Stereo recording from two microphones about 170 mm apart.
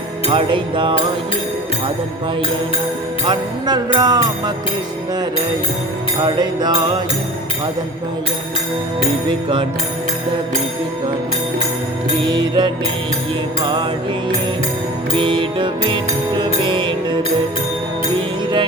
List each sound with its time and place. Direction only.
0.3 s music: 30° right (ahead or behind)
3.2 s music: 25° right (ahead or behind)
6.2 s music: 25° right (ahead or behind)
12.3 s music: 25° right (ahead or behind)
15.1 s music: 30° right (ahead or behind)